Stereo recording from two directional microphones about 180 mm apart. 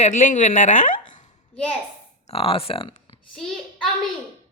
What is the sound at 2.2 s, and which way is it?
Speech, 30° left (ahead or behind).